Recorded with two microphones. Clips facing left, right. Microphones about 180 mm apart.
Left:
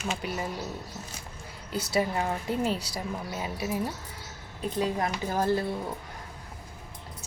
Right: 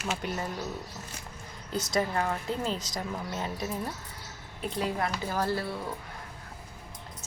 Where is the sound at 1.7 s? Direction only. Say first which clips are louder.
Left 1 dB; 10° left (ahead or behind).